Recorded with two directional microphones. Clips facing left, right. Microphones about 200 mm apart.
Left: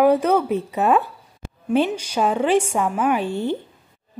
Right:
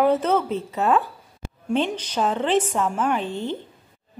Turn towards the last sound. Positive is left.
turn(degrees=10)  # may be behind; listen again after turning